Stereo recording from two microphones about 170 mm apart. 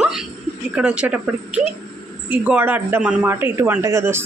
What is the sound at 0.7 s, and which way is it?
A woman's voice, 5° right (ahead or behind).